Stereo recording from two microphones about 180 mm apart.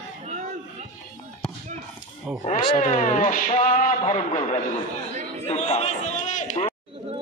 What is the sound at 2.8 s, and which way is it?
A man's voice, 45° left (ahead or behind).